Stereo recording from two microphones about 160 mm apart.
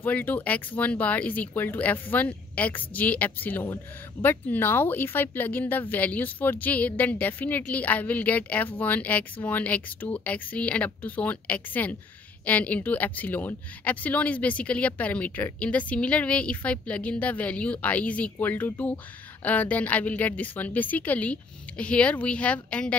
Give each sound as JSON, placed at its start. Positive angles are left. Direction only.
{"t": 0.0, "sound": "speech", "side_deg": 10}